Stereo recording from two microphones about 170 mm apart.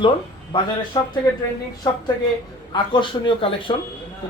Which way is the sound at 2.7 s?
30° left (ahead or behind).